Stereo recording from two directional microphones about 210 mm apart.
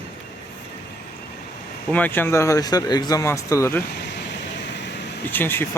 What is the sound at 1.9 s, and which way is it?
A man's voice, 10° left (ahead or behind).